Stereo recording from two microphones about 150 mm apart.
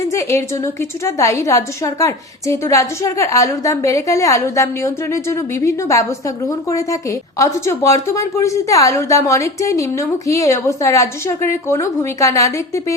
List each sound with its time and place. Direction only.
0.0 s a woman's voice: 20° left (ahead or behind)